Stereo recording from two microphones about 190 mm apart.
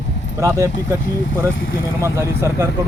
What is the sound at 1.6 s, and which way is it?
Speech, 90° left.